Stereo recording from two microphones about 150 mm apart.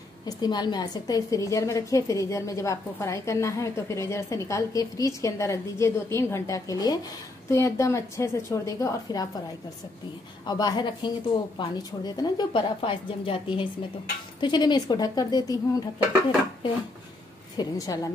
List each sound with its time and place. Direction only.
0.4 s a woman's voice: 30° left (ahead or behind)
10.4 s a woman's voice: 30° left (ahead or behind)
17.6 s a woman's voice: 25° left (ahead or behind)